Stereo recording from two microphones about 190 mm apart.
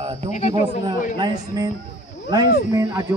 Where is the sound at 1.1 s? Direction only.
20° right (ahead or behind).